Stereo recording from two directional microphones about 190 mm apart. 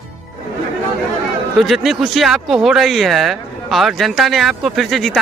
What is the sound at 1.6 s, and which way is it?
Speech, centre (ahead or behind).